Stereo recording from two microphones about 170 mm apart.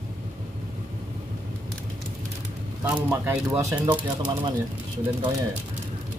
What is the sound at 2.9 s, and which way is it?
Speech, 10° right (ahead or behind).